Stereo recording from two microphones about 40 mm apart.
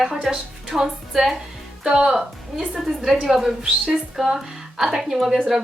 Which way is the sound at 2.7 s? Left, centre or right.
Centre.